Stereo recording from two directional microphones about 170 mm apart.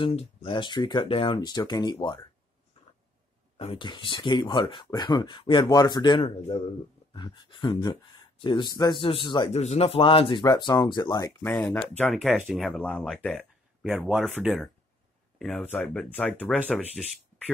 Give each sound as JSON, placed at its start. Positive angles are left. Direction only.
{"t": 0.0, "sound": "speech", "side_deg": 35}
{"t": 3.5, "sound": "speech", "side_deg": 35}
{"t": 9.5, "sound": "speech", "side_deg": 40}
{"t": 11.5, "sound": "speech", "side_deg": 10}